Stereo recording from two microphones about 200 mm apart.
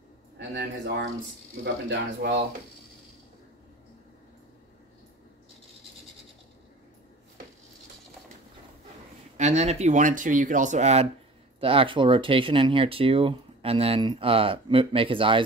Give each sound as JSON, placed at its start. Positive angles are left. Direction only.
{"t": 0.4, "sound": "speech", "side_deg": -60}
{"t": 9.4, "sound": "speech", "side_deg": -35}